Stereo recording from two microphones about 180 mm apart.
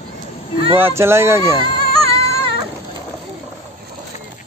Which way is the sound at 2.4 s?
30° right (ahead or behind).